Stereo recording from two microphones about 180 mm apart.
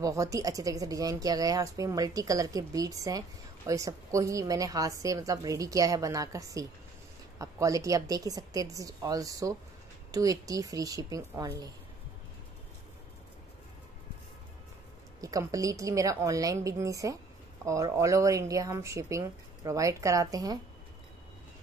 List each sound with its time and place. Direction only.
0.0 s speech: 20° right (ahead or behind)
15.1 s speech: 20° right (ahead or behind)